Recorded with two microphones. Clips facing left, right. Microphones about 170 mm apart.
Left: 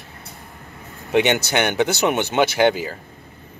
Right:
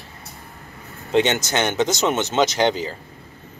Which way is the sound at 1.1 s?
10° left (ahead or behind).